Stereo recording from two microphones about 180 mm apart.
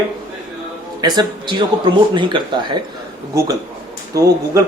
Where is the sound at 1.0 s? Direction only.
20° right (ahead or behind).